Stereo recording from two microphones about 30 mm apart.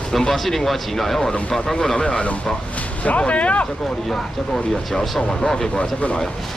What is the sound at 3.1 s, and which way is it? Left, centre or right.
Speech, left.